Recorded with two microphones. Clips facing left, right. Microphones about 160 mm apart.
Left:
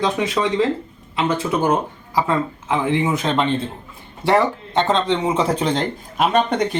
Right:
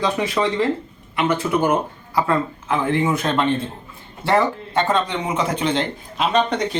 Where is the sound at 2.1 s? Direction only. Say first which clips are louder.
Even; 20° left (ahead or behind).